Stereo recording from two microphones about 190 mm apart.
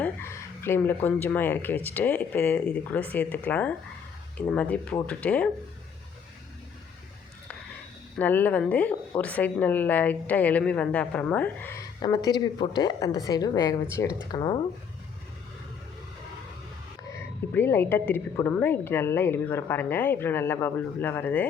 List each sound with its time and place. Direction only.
0.0 s a woman's voice: 15° left (ahead or behind)
8.2 s a woman's voice: 10° left (ahead or behind)
12.0 s a woman's voice: 20° left (ahead or behind)
17.0 s a woman's voice: 15° left (ahead or behind)